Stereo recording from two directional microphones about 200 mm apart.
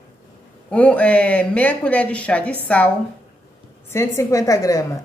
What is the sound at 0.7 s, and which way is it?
Speech, 5° left (ahead or behind).